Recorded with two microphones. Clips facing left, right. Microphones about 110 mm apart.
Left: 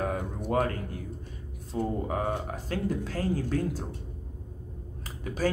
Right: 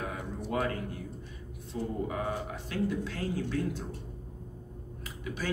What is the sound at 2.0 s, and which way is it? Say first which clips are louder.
A man's voice: left 3 dB; 45° left (ahead or behind).